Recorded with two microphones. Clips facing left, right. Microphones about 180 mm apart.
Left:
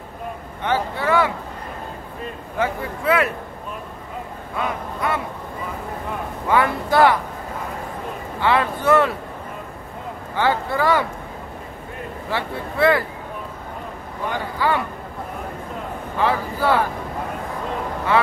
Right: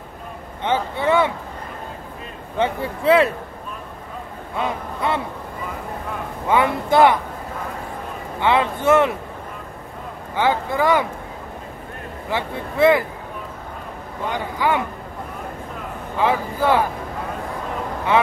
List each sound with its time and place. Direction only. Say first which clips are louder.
0.7 s speech: right 1 dB; 20° right (ahead or behind)
2.5 s a man's voice: right 2 dB; 25° right (ahead or behind)
4.6 s a man's voice: right 1 dB; 25° right (ahead or behind)
6.4 s a man's voice: right 1 dB; 20° right (ahead or behind)
8.4 s a man's voice: right 1 dB; 20° right (ahead or behind)
10.3 s speech: right 1 dB; 15° right (ahead or behind)
12.3 s a man's voice: right 1 dB; 20° right (ahead or behind)
14.3 s speech: right 1 dB; 15° right (ahead or behind)
16.2 s speech: right 1 dB; 15° right (ahead or behind)